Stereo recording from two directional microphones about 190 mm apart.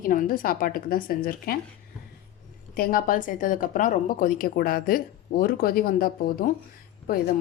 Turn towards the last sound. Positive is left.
turn(degrees=50)  # may be behind; listen again after turning